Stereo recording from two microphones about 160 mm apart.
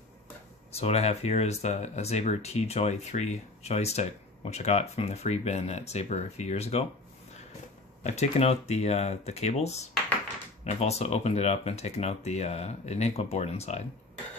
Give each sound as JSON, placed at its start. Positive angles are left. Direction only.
{"t": 0.7, "sound": "speech", "side_deg": 40}
{"t": 8.0, "sound": "speech", "side_deg": 45}